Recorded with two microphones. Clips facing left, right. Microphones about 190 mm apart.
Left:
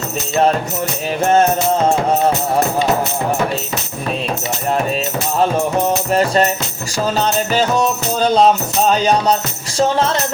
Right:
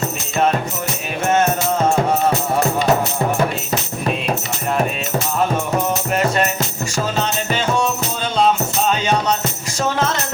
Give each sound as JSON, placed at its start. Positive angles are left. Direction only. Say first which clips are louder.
{"t": 1.2, "sound": "music", "louder": "left 4 dB", "side_deg": 35}
{"t": 6.1, "sound": "music", "louder": "left 3 dB", "side_deg": 35}